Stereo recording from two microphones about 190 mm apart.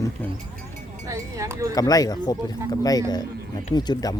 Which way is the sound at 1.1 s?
15° right (ahead or behind).